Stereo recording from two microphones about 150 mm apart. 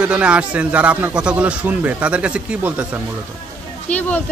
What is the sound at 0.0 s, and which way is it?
Speech, 5° right (ahead or behind).